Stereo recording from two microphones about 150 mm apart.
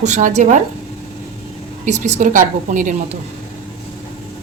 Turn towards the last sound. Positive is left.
turn(degrees=-60)  # may be behind; listen again after turning